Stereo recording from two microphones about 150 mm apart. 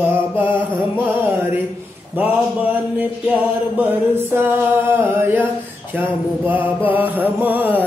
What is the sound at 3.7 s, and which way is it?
Music, 15° right (ahead or behind).